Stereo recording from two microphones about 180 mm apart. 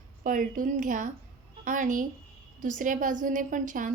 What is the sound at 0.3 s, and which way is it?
A woman's voice, 50° right (ahead or behind).